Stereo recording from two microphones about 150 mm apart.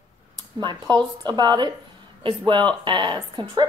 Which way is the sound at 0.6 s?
30° right (ahead or behind).